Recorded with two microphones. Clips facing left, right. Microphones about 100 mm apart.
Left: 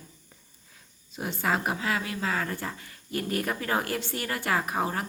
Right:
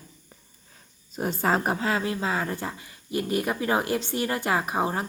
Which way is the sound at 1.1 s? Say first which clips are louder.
Right 4 dB; 40° right (ahead or behind).